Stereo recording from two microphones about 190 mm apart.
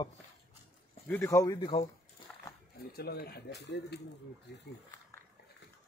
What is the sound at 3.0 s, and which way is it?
Speech, 55° left (ahead or behind).